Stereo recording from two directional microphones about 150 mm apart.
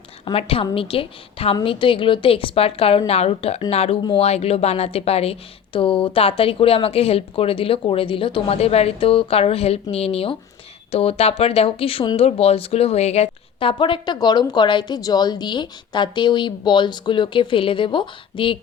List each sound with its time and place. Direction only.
0.3 s a woman's voice: 40° left (ahead or behind)